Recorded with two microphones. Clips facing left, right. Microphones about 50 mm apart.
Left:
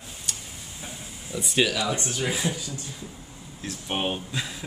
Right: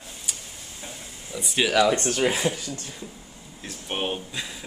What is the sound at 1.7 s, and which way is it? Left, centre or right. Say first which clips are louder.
Speech: right 7 dB; right.